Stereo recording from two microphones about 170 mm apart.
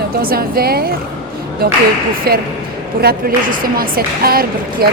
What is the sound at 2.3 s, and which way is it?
A woman's voice, 65° right (ahead or behind).